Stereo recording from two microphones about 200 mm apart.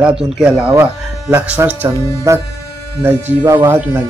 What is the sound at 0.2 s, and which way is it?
Speech, 5° right (ahead or behind).